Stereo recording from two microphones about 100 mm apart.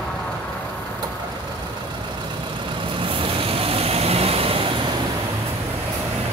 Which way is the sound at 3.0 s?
60° right (ahead or behind).